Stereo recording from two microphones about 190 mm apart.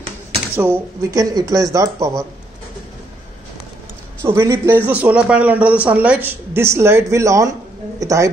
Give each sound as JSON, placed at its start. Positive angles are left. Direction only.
{"t": 0.6, "sound": "speech", "side_deg": -15}
{"t": 4.2, "sound": "speech", "side_deg": -15}